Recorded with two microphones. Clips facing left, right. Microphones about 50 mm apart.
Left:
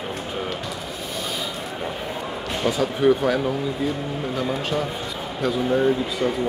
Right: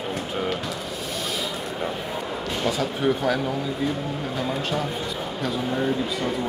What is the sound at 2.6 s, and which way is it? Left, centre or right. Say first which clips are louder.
Speech: left 4 dB; centre.